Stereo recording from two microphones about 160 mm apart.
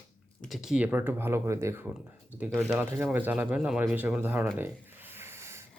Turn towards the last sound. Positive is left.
turn(degrees=-15)  # may be behind; listen again after turning